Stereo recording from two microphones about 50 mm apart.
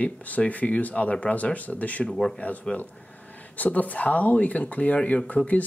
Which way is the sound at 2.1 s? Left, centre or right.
Centre.